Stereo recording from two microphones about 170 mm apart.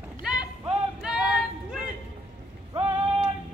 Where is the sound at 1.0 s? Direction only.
5° right (ahead or behind).